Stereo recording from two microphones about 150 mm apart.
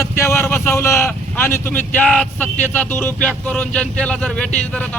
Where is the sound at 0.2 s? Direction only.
20° left (ahead or behind).